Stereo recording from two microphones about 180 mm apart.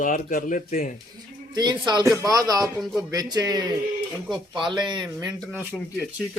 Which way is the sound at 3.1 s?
20° right (ahead or behind).